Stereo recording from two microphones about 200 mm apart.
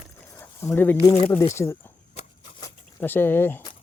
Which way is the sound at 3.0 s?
10° left (ahead or behind).